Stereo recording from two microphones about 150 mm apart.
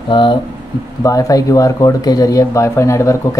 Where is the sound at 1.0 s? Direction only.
20° left (ahead or behind).